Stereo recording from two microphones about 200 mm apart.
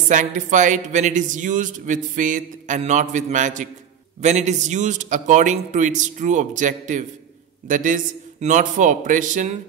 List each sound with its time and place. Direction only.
0.1 s speech: 40° right (ahead or behind)